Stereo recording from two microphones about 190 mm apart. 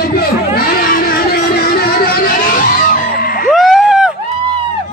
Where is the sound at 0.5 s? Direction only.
50° left (ahead or behind).